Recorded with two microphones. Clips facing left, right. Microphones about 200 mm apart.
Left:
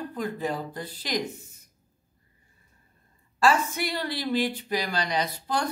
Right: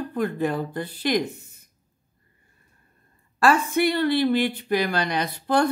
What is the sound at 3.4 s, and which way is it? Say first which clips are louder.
A woman's voice: right 4 dB; 60° right (ahead or behind).